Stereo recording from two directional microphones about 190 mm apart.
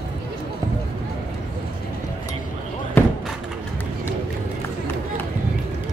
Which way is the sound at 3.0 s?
10° left (ahead or behind).